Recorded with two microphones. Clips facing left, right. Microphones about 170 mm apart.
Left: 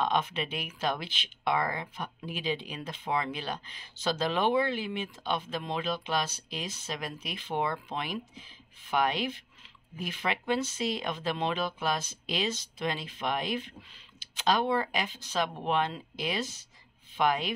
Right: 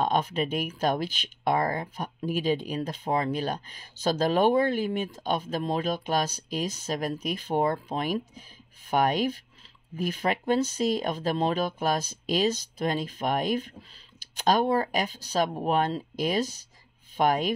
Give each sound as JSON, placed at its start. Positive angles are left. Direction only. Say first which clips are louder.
{"t": 0.0, "sound": "speech", "louder": "right 4 dB", "side_deg": -40}